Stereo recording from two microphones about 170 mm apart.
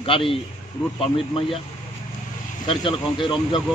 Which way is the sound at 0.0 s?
30° left (ahead or behind).